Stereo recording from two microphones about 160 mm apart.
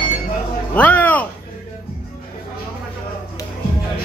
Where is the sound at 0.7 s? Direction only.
10° left (ahead or behind).